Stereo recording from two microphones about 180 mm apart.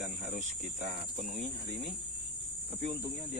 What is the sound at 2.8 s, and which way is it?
Speech, 30° right (ahead or behind).